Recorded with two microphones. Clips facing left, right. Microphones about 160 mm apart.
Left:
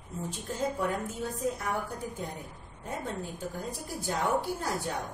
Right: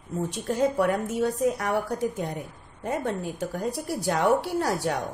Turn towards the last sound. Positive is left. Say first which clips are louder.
# right 7 dB
turn(degrees=-80)